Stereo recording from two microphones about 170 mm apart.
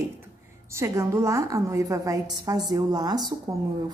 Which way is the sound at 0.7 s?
15° right (ahead or behind).